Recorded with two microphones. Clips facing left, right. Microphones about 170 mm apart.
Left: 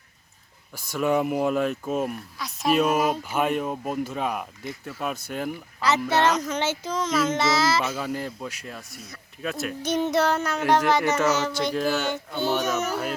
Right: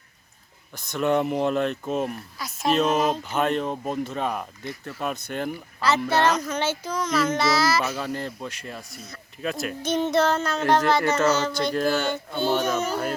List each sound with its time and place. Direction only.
0.7 s speech: 5° left (ahead or behind)
2.7 s speech: 10° left (ahead or behind)
5.8 s a child's voice: 20° left (ahead or behind)
7.9 s speech: 10° left (ahead or behind)
9.8 s speech: 15° left (ahead or behind)
12.3 s a sound: 15° right (ahead or behind)
12.9 s speech: 5° left (ahead or behind)